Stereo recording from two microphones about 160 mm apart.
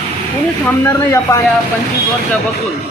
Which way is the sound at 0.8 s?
20° left (ahead or behind).